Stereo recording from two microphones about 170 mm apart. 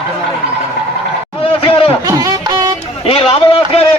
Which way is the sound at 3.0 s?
35° left (ahead or behind).